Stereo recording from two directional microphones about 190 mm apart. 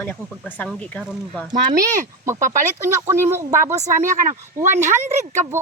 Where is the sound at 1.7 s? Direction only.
45° right (ahead or behind).